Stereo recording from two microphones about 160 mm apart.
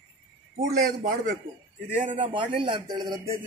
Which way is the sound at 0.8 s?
90° right.